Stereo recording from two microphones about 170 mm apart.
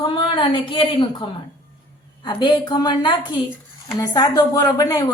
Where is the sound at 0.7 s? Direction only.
30° left (ahead or behind).